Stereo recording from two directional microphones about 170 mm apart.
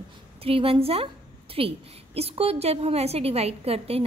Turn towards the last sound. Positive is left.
turn(degrees=-35)  # may be behind; listen again after turning